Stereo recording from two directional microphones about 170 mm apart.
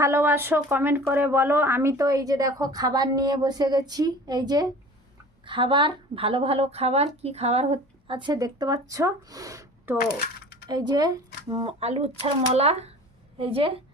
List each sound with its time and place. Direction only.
0.0 s a woman's voice: 15° right (ahead or behind)
10.0 s a sound: 70° left (ahead or behind)
10.7 s speech: 25° right (ahead or behind)
11.8 s a woman's voice: 40° right (ahead or behind)